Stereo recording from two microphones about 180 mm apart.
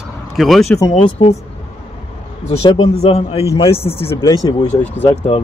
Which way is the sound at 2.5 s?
35° left (ahead or behind).